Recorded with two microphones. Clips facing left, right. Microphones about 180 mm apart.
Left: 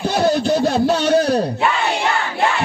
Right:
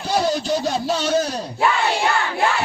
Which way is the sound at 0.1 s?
60° left (ahead or behind).